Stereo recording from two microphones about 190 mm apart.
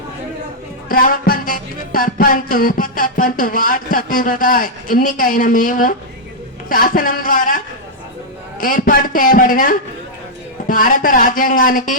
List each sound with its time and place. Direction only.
0.9 s music: 50° left (ahead or behind)
6.7 s a man's voice: 45° left (ahead or behind)
8.6 s a man's voice: 45° left (ahead or behind)